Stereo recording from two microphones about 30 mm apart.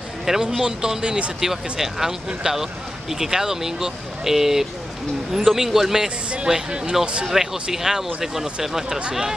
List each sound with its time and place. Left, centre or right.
0.5 s speech: right
1.4 s speech: centre
6.5 s speech: right
7.0 s speech: centre